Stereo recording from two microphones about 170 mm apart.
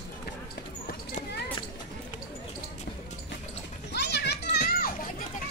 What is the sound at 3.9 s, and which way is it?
Children playing, 80° left.